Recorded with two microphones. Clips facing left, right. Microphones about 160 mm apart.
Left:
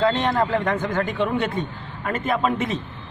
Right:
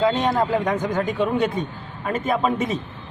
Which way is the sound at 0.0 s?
10° right (ahead or behind).